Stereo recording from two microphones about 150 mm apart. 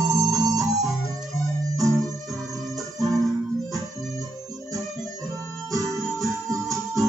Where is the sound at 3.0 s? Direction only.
Centre (ahead or behind).